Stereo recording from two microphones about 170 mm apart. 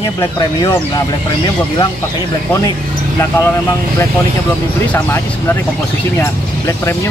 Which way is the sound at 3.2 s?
15° left (ahead or behind).